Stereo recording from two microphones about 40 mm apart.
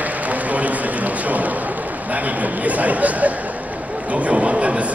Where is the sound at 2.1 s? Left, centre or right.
Right.